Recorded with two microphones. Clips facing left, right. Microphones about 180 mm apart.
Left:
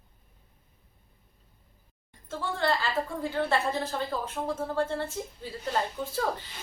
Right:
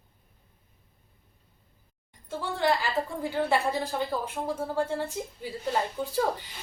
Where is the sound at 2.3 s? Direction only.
15° right (ahead or behind).